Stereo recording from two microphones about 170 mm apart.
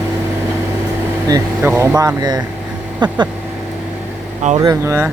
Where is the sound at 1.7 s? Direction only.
15° right (ahead or behind).